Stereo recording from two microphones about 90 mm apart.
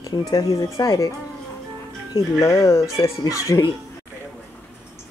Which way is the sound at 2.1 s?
35° left (ahead or behind).